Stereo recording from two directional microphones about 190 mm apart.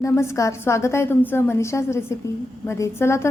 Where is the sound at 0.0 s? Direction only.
15° left (ahead or behind).